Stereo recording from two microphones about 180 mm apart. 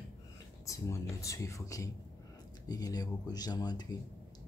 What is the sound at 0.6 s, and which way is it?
Speech, 15° left (ahead or behind).